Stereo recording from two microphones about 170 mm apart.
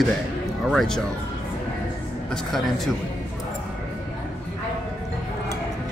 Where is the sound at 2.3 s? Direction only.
Centre (ahead or behind).